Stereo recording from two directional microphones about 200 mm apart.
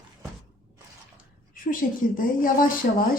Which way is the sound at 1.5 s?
45° left (ahead or behind).